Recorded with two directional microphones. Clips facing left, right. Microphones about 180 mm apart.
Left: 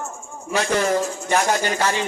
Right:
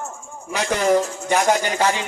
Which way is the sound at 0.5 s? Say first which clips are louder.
Right 2 dB; 15° right (ahead or behind).